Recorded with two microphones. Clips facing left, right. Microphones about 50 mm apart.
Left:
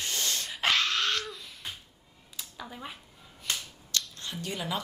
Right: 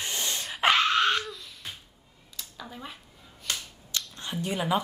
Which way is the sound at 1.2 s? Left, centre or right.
Centre.